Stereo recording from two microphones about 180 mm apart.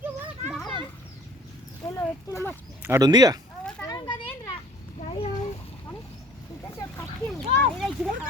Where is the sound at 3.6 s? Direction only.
5° left (ahead or behind).